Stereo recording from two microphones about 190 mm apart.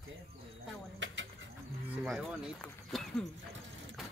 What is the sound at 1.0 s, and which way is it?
Bird, 75° right (ahead or behind).